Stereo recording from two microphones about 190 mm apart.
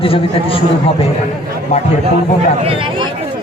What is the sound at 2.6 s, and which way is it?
Speech, 30° right (ahead or behind).